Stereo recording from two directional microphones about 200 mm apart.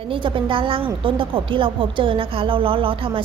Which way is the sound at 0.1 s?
25° right (ahead or behind).